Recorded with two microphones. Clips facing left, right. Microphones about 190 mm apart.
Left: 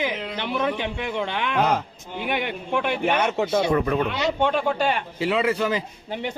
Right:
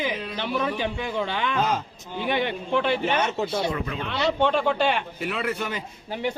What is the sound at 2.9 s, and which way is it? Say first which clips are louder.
Speech: left 2 dB; 60° left (ahead or behind).